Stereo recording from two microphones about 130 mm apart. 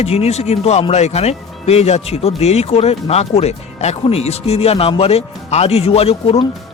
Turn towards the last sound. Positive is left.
turn(degrees=50)  # may be behind; listen again after turning